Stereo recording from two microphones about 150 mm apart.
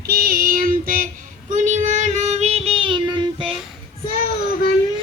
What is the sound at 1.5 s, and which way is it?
Child singing, 55° right (ahead or behind).